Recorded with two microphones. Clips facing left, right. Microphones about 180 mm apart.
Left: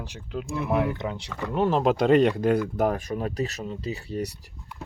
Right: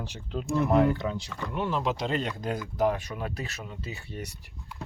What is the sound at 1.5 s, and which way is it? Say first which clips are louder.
Speech: left 7 dB; 45° left (ahead or behind).